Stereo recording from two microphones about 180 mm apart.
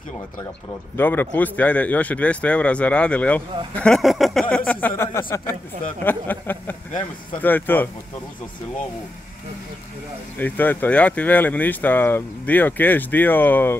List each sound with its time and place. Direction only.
0.9 s a man's voice: 10° left (ahead or behind)
10.4 s a man's voice: 10° left (ahead or behind)